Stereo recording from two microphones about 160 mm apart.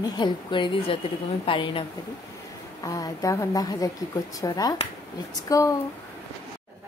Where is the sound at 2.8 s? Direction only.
20° left (ahead or behind).